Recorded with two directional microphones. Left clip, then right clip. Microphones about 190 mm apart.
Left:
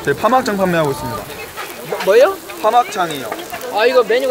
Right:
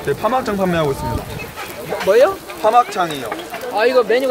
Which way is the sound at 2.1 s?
Centre (ahead or behind).